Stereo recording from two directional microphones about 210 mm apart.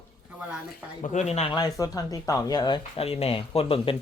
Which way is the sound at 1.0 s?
35° left (ahead or behind).